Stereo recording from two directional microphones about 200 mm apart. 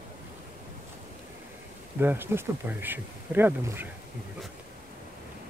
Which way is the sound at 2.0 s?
10° right (ahead or behind).